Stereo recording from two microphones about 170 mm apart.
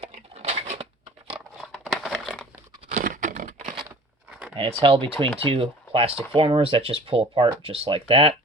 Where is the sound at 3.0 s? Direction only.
55° right (ahead or behind).